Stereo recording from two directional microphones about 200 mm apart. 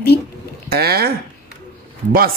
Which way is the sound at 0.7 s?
50° right (ahead or behind).